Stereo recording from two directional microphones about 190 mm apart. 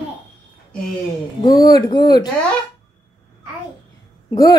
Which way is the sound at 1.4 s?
20° left (ahead or behind).